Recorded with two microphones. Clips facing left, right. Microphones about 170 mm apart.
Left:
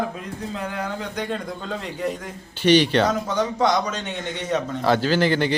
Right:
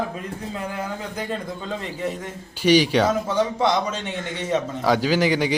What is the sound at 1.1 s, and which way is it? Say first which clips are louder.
A man's voice: left 1 dB; centre (ahead or behind).